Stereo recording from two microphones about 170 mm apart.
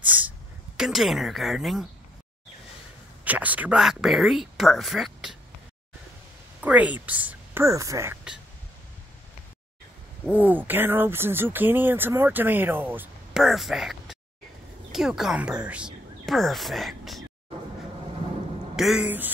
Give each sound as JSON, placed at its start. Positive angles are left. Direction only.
{"t": 0.0, "sound": "a sound", "side_deg": -10}
{"t": 0.7, "sound": "speech", "side_deg": 0}
{"t": 3.3, "sound": "speech", "side_deg": -10}
{"t": 6.6, "sound": "speech", "side_deg": -10}
{"t": 10.2, "sound": "speech", "side_deg": -10}
{"t": 18.8, "sound": "speech", "side_deg": -5}